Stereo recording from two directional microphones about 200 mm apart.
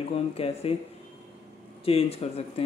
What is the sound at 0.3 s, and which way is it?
Speech, 30° left (ahead or behind).